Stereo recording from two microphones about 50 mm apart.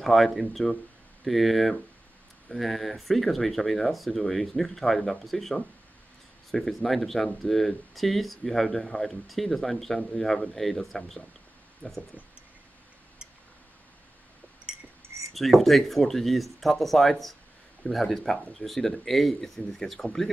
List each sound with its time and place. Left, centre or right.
0.0 s speech: centre
11.8 s speech: centre
15.3 s speech: centre